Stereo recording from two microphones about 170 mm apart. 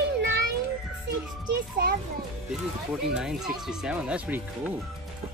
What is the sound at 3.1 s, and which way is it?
Speech, 5° right (ahead or behind).